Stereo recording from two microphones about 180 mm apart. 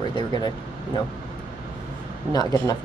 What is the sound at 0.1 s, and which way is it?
Speech, 25° left (ahead or behind).